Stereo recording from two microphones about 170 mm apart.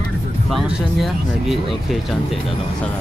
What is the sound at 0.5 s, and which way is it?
Speech, centre (ahead or behind).